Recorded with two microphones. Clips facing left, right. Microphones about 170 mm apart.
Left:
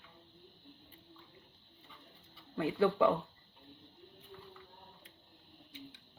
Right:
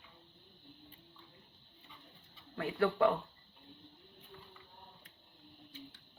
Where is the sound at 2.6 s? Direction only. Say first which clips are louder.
Left 1 dB; 20° left (ahead or behind).